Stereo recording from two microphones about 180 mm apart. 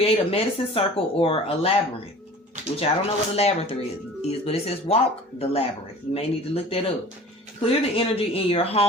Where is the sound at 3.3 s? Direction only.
35° left (ahead or behind).